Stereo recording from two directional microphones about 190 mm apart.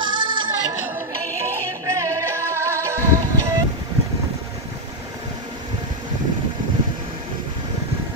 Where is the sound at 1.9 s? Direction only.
15° right (ahead or behind).